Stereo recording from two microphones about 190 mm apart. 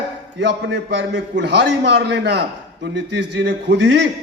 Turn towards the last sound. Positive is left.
turn(degrees=-65)  # may be behind; listen again after turning